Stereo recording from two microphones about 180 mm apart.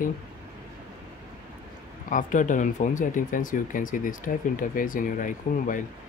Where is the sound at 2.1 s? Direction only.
45° left (ahead or behind).